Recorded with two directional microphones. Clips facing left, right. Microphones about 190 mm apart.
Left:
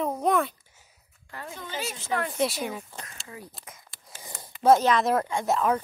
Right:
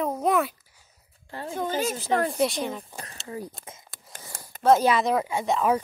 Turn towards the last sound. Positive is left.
turn(degrees=-5)  # may be behind; listen again after turning